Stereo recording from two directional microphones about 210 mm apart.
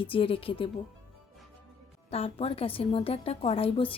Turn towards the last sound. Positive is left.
turn(degrees=25)  # may be behind; listen again after turning